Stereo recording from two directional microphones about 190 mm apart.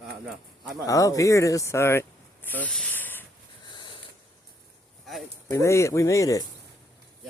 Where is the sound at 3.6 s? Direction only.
25° left (ahead or behind).